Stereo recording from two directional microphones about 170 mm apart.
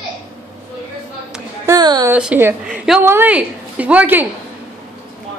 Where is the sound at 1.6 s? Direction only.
25° right (ahead or behind).